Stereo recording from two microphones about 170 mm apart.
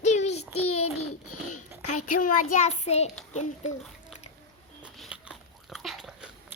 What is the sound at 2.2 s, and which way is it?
A child's voice, 45° left (ahead or behind).